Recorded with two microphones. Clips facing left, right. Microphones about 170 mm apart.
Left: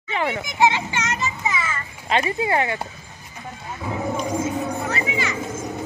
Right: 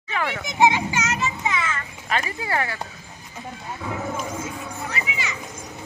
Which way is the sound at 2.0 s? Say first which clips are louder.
Left 6 dB; 25° left (ahead or behind).